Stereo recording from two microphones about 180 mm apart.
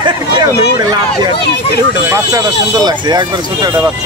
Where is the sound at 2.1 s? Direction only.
20° right (ahead or behind).